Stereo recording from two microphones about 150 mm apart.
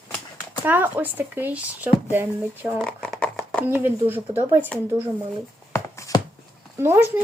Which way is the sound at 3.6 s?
15° right (ahead or behind).